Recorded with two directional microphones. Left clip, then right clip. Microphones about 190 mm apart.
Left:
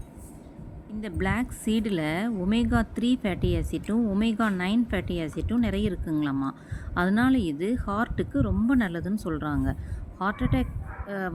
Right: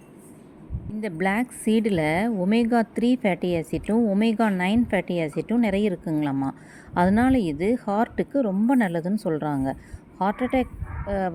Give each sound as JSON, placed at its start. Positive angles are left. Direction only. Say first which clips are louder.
{"t": 1.0, "sound": "a woman's voice", "louder": "right 5 dB", "side_deg": -20}